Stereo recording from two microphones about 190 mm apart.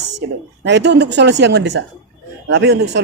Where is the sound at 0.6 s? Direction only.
65° right (ahead or behind).